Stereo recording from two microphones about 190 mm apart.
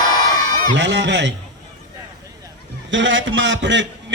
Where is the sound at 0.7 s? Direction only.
70° right (ahead or behind).